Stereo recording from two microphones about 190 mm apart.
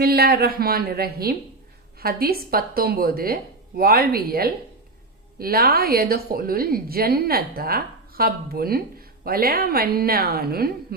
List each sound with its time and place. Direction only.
0.0 s a woman's voice: 55° right (ahead or behind)